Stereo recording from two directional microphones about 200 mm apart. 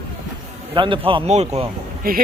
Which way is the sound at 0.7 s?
25° right (ahead or behind).